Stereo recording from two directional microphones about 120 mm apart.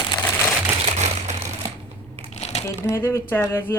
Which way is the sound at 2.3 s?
65° left (ahead or behind).